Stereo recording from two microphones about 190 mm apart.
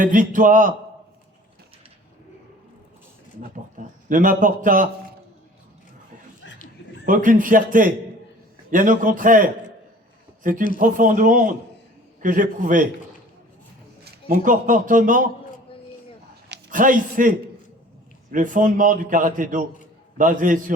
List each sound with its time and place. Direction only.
0.0 s a man's voice: 45° right (ahead or behind)
3.8 s a man's voice: 45° right (ahead or behind)
7.0 s a man's voice: 45° right (ahead or behind)
14.0 s a man's voice: 50° right (ahead or behind)
16.7 s a man's voice: 45° right (ahead or behind)